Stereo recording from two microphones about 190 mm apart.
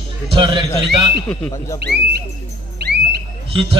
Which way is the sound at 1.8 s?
60° right (ahead or behind).